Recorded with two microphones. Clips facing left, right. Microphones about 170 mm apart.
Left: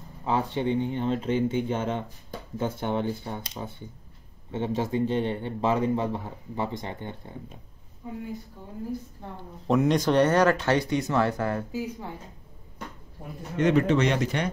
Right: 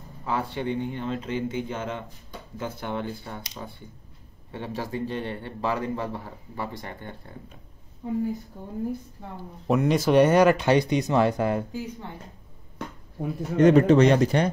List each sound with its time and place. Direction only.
0.2 s speech: 20° left (ahead or behind)
4.5 s speech: 20° left (ahead or behind)
9.4 s speech: 5° right (ahead or behind)
11.7 s speech: 10° left (ahead or behind)
13.6 s a man's voice: 40° right (ahead or behind)